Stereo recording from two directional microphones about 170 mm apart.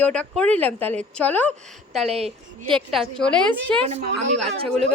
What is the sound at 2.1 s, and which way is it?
Speech, 35° right (ahead or behind).